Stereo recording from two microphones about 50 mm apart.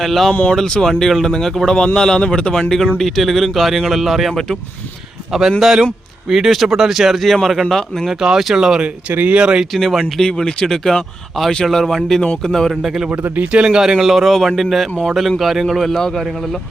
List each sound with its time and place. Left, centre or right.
0.0 s speech: centre
0.5 s speech: centre
2.6 s speech: centre
5.3 s speech: centre
8.1 s speech: centre
9.7 s speech: centre
10.2 s speech: centre
12.7 s speech: centre
13.1 s speech: right
13.6 s speech: centre